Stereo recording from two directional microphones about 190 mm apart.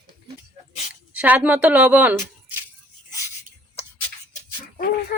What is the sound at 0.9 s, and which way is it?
Speech, 5° right (ahead or behind).